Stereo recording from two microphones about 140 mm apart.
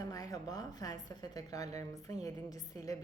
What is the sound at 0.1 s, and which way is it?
A woman's voice, 25° left (ahead or behind).